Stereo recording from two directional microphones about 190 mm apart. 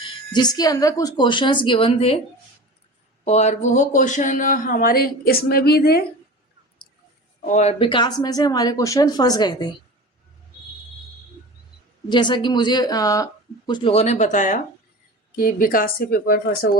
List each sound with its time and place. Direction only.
0.3 s speech: 20° left (ahead or behind)
3.2 s speech: 35° left (ahead or behind); by 6.1 s 55° left (ahead or behind)
7.4 s speech: 35° left (ahead or behind)
12.0 s speech: 25° left (ahead or behind); by 16.7 s 50° left (ahead or behind)